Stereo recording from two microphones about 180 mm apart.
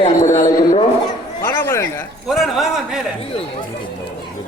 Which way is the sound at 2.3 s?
Centre (ahead or behind).